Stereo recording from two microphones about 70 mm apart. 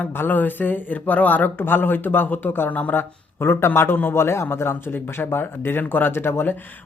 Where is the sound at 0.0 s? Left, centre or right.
Left.